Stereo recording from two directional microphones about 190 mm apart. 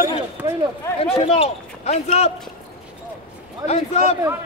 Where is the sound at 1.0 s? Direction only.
30° left (ahead or behind).